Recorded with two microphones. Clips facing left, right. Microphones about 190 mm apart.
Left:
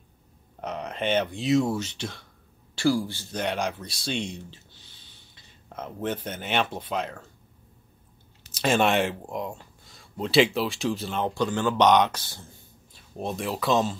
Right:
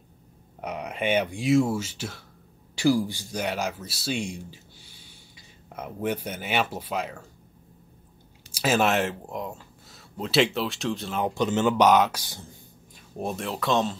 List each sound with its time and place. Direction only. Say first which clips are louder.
0.6 s speech: even; 10° right (ahead or behind)
2.7 s speech: right 2 dB; 15° right (ahead or behind)
8.5 s speech: even; 5° right (ahead or behind)
11.2 s speech: right 3 dB; 20° right (ahead or behind)
11.7 s speech: left 2 dB; 5° right (ahead or behind)